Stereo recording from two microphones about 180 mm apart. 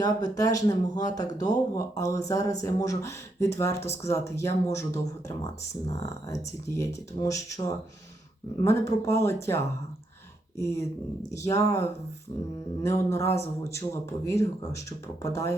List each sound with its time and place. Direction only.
0.0 s speech: 20° left (ahead or behind)